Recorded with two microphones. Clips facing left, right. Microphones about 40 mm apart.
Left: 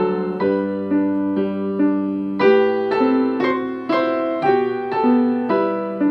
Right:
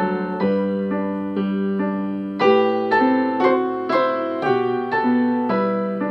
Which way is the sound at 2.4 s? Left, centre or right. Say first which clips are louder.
Left 1 dB; left.